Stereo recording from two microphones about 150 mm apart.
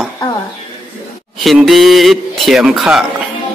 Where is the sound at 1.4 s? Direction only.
Centre (ahead or behind).